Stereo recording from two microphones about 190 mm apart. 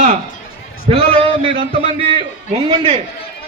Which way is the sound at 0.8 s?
30° right (ahead or behind).